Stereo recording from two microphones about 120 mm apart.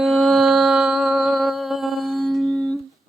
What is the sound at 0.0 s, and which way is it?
Mantra, centre (ahead or behind).